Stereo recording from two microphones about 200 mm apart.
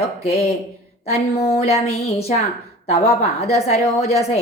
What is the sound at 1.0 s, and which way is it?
A woman's voice, 35° left (ahead or behind).